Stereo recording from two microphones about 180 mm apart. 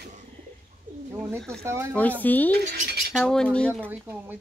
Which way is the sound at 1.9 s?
10° left (ahead or behind).